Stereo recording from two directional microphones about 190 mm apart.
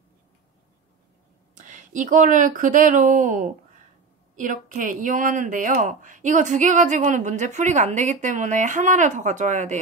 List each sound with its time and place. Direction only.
1.6 s a woman's voice: 40° right (ahead or behind)